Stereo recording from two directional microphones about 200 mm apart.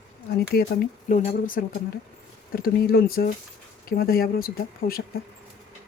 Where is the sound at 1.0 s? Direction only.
40° left (ahead or behind).